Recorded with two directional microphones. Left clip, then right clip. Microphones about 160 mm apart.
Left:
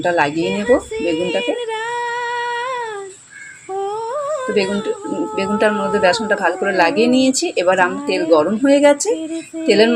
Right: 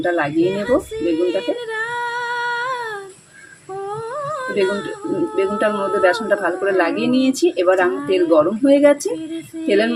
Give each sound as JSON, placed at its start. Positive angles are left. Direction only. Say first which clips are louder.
{"t": 0.0, "sound": "speech", "louder": "left 1 dB", "side_deg": 15}
{"t": 4.1, "sound": "humming", "louder": "left 3 dB", "side_deg": 10}
{"t": 5.4, "sound": "a woman's voice", "louder": "left 3 dB", "side_deg": 5}